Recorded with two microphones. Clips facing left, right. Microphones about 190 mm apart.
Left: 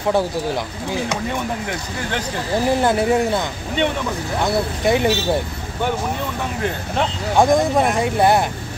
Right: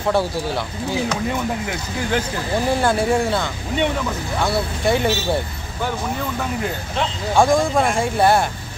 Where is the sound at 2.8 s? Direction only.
20° left (ahead or behind).